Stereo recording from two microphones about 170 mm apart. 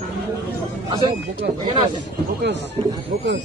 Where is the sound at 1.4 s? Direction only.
85° right.